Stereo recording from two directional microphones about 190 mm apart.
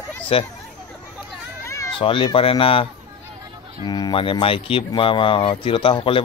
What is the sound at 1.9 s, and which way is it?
Speech, 25° left (ahead or behind).